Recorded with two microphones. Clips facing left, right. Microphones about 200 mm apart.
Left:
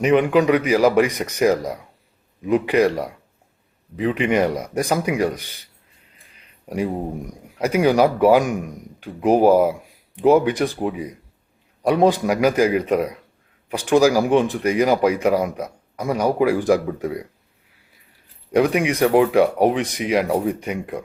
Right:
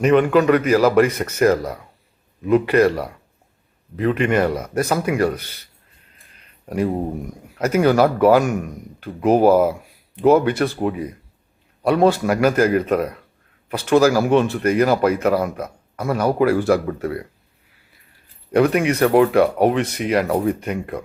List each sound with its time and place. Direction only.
0.0 s a man's voice: 10° left (ahead or behind)
6.7 s a man's voice: 10° left (ahead or behind)
18.5 s a man's voice: 10° left (ahead or behind)